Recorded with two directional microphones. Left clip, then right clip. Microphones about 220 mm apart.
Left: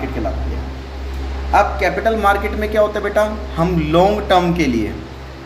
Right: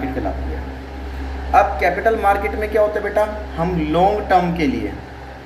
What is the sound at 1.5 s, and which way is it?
Speech, 35° left (ahead or behind).